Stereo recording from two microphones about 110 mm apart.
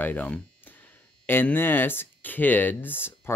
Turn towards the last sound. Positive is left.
turn(degrees=20)  # may be behind; listen again after turning